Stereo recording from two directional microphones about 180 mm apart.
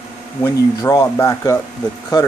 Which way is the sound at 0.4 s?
15° left (ahead or behind).